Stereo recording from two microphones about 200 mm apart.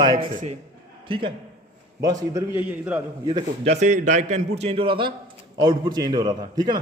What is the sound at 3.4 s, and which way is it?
A man's voice, 30° right (ahead or behind).